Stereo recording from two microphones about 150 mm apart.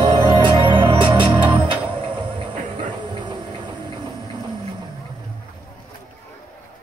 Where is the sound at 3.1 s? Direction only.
30° right (ahead or behind).